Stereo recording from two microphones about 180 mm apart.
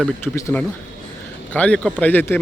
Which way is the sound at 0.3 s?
15° left (ahead or behind).